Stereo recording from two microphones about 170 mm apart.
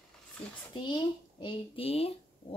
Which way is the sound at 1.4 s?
30° left (ahead or behind).